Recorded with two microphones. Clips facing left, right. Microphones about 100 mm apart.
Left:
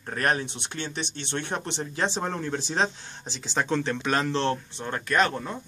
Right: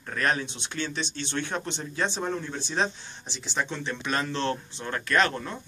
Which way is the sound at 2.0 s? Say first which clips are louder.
Left 1 dB; 35° left (ahead or behind).